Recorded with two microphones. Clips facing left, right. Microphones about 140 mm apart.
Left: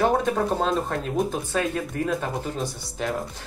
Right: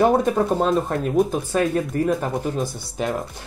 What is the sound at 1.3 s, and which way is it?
Speech, 10° right (ahead or behind).